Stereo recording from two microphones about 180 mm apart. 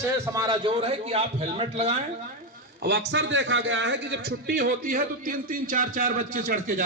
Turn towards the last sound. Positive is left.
turn(degrees=-45)  # may be behind; listen again after turning